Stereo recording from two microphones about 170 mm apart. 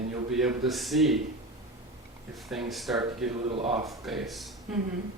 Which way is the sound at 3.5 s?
35° right (ahead or behind).